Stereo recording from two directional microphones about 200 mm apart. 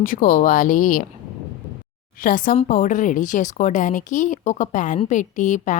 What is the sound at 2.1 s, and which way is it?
A woman's voice, 45° left (ahead or behind).